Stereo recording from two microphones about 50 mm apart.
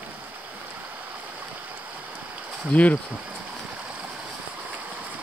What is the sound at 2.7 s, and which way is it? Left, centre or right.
Speech, left.